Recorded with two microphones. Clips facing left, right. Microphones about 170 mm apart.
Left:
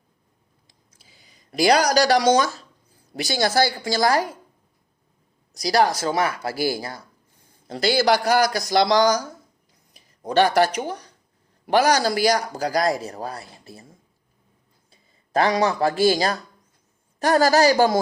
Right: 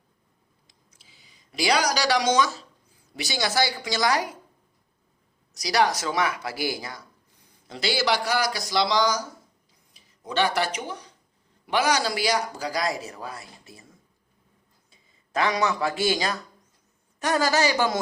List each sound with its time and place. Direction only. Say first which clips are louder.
1.5 s speech: left 6 dB; 45° left (ahead or behind)
4.1 s speech: left 4 dB; 50° left (ahead or behind)
5.6 s a man's voice: left 4 dB; 45° left (ahead or behind)
7.7 s a man's voice: left 6 dB; 45° left (ahead or behind)
14.8 s a man's voice: left 2 dB; 35° left (ahead or behind)